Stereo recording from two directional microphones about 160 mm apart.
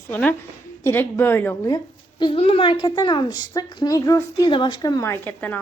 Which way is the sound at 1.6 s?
25° left (ahead or behind).